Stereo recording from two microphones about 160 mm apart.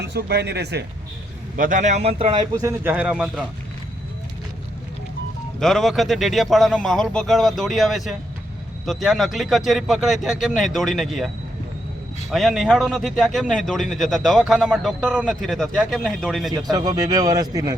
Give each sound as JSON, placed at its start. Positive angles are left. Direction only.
{"t": 0.0, "sound": "speech", "side_deg": -90}
{"t": 1.5, "sound": "a man's voice", "side_deg": -55}
{"t": 2.3, "sound": "speech", "side_deg": -20}
{"t": 5.5, "sound": "a man's voice", "side_deg": 0}
{"t": 12.3, "sound": "a man's voice", "side_deg": 0}
{"t": 16.7, "sound": "speech", "side_deg": -25}